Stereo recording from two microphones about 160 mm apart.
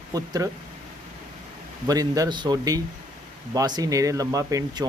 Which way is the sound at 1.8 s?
20° right (ahead or behind).